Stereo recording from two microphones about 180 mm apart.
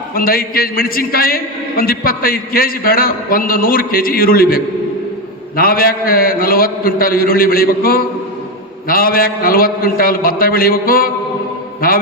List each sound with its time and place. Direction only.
0.1 s a man's voice: 55° left (ahead or behind)